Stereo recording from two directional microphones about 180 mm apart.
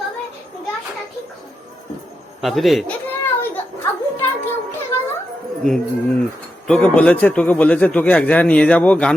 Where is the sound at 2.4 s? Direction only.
Centre (ahead or behind).